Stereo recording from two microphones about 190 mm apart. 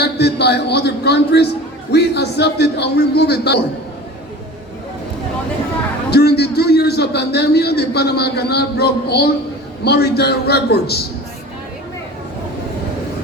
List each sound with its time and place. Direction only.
0.0 s a man's voice: 60° left (ahead or behind)
6.1 s a man's voice: 60° left (ahead or behind)